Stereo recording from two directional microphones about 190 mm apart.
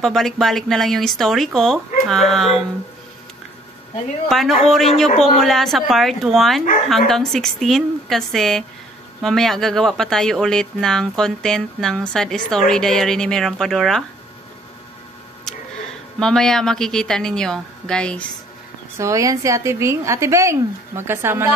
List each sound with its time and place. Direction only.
0.0 s speech: centre (ahead or behind)
4.3 s speech: centre (ahead or behind)
5.1 s speech: 40° left (ahead or behind)
5.4 s speech: centre (ahead or behind)
16.2 s speech: 5° left (ahead or behind)
18.9 s a woman's voice: 15° right (ahead or behind)